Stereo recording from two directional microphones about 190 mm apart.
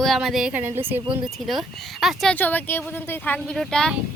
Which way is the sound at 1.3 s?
Centre (ahead or behind).